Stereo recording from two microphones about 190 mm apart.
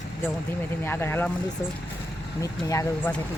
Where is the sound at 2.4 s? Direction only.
15° left (ahead or behind).